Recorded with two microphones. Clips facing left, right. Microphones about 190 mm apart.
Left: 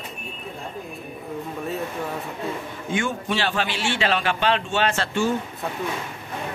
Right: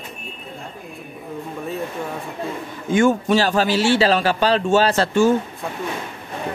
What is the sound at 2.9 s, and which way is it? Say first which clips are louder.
A man's voice: right 10 dB; 40° right (ahead or behind).